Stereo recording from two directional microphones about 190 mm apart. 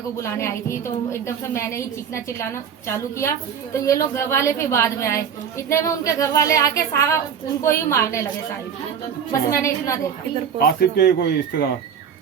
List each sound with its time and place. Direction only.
0.2 s a woman's voice: 15° left (ahead or behind)
9.5 s a woman's voice: 15° left (ahead or behind)
10.6 s speech: 55° left (ahead or behind)